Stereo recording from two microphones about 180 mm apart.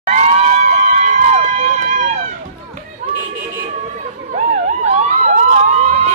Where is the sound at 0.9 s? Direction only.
40° right (ahead or behind).